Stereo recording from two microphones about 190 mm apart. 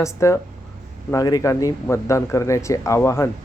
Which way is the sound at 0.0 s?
15° left (ahead or behind).